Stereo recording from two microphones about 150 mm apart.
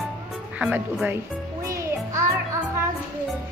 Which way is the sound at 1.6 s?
20° right (ahead or behind).